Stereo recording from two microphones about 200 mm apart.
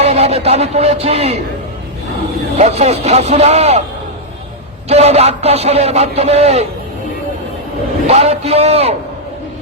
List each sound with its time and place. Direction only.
0.0 s a man's voice: 30° right (ahead or behind)
2.6 s a man's voice: 35° right (ahead or behind)
4.9 s a man's voice: 30° right (ahead or behind)
8.0 s a man's voice: 30° right (ahead or behind)